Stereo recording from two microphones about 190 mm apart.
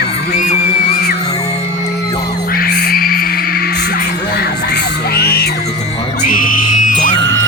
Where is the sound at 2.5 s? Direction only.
55° left (ahead or behind).